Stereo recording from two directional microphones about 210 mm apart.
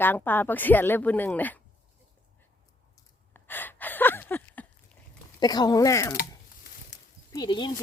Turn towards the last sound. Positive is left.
turn(degrees=20)  # may be behind; listen again after turning